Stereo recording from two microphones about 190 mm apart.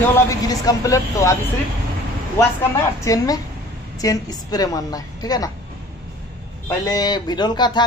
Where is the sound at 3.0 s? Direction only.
20° left (ahead or behind).